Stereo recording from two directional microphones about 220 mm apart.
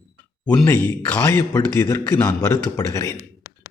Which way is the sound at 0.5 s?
10° left (ahead or behind).